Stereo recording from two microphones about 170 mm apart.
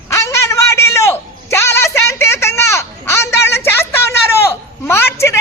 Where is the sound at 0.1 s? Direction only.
15° left (ahead or behind).